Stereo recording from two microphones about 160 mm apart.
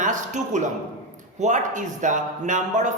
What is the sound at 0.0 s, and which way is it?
A woman's voice, 50° right (ahead or behind).